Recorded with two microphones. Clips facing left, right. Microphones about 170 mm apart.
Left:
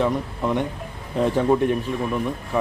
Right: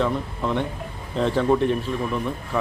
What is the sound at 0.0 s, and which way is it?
Speech, 15° left (ahead or behind).